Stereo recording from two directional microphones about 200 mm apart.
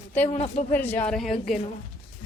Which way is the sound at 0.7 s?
10° left (ahead or behind).